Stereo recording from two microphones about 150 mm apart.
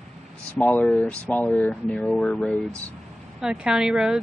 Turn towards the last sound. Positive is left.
turn(degrees=-5)  # may be behind; listen again after turning